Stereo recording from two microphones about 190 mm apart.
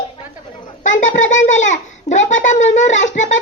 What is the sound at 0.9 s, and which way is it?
A child's voice, 40° left (ahead or behind).